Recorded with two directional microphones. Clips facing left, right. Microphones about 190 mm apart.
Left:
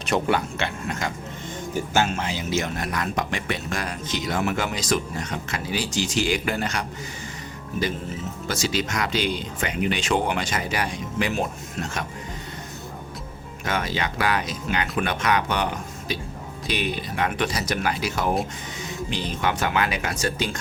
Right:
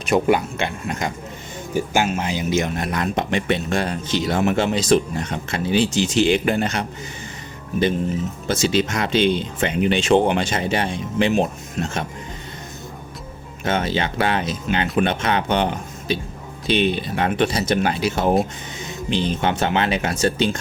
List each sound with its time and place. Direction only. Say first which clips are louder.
0.0 s speech: right 5 dB; 10° right (ahead or behind)
8.4 s speech: right 6 dB; 25° right (ahead or behind)
13.7 s speech: right 5 dB; 25° right (ahead or behind)